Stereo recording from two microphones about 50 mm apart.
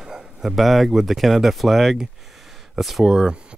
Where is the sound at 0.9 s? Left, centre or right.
Centre.